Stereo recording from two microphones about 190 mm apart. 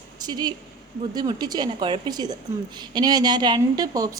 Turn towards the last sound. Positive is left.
turn(degrees=-20)  # may be behind; listen again after turning